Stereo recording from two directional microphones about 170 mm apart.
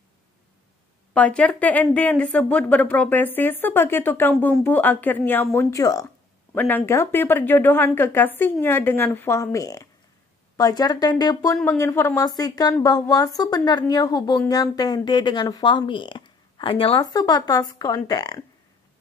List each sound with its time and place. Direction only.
1.1 s a woman's voice: 5° left (ahead or behind); by 17.0 s 35° left (ahead or behind)
17.0 s speech: 20° left (ahead or behind)